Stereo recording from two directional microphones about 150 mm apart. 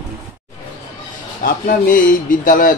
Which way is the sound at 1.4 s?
70° left (ahead or behind).